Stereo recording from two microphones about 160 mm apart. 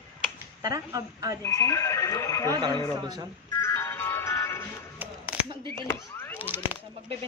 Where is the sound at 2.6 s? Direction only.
25° right (ahead or behind).